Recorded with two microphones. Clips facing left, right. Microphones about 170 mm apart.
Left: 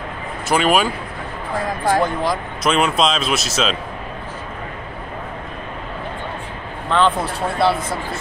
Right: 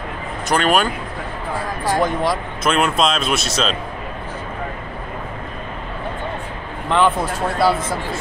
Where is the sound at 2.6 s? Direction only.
Centre (ahead or behind).